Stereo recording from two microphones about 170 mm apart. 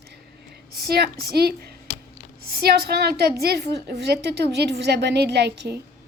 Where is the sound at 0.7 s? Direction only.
70° right (ahead or behind).